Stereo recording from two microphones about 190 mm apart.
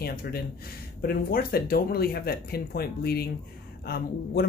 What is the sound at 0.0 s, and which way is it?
Speech, 50° left (ahead or behind).